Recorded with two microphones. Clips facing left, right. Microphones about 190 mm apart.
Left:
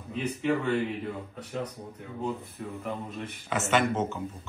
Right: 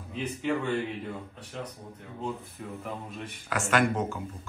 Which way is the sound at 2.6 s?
5° right (ahead or behind).